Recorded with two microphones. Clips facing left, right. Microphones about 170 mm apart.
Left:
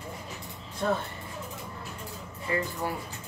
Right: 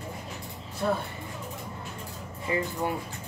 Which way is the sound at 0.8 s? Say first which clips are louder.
Even; 10° right (ahead or behind).